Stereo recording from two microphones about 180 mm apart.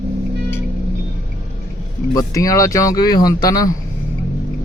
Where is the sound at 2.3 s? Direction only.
15° left (ahead or behind).